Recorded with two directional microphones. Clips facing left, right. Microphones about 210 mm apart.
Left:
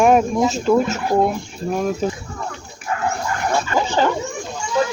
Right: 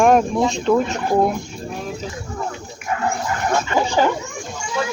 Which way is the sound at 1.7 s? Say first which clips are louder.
Left 9 dB; 50° left (ahead or behind).